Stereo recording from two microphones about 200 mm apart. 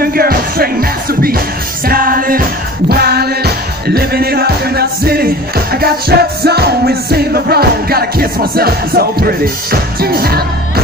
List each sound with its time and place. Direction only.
0.0 s music: 50° right (ahead or behind)